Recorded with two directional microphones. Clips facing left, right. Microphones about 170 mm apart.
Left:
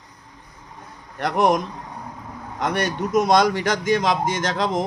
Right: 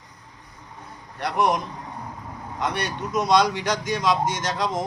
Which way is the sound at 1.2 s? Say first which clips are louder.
Left 4 dB; 50° left (ahead or behind).